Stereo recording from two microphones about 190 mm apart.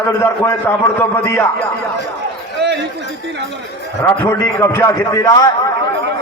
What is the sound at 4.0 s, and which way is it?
A man's voice, 10° left (ahead or behind).